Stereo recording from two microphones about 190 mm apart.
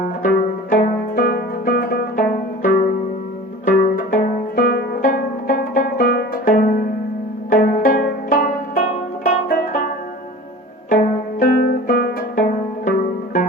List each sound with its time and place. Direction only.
0.2 s zither: 50° left (ahead or behind)
3.7 s music: 50° left (ahead or behind)
10.8 s music: 45° left (ahead or behind)